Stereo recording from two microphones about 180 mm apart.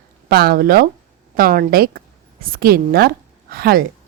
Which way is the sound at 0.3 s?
55° right (ahead or behind).